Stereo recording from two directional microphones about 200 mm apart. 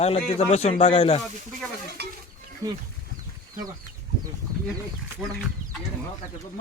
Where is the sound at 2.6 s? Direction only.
15° right (ahead or behind).